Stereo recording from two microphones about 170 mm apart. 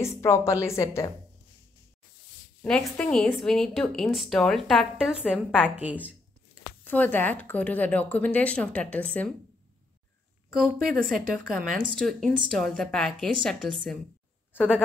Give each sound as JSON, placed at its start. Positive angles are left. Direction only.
{"t": 0.0, "sound": "a woman's voice", "side_deg": 15}
{"t": 2.6, "sound": "speech", "side_deg": 5}
{"t": 6.8, "sound": "speech", "side_deg": 10}
{"t": 11.3, "sound": "speech", "side_deg": -55}
{"t": 11.9, "sound": "speech", "side_deg": 5}